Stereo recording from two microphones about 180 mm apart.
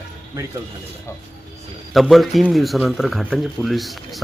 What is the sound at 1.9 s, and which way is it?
Speech, centre (ahead or behind).